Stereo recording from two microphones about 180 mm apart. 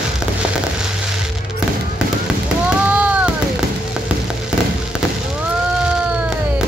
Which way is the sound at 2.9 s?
10° right (ahead or behind).